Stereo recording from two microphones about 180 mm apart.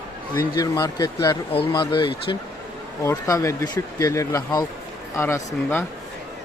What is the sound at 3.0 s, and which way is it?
Speech, 15° left (ahead or behind).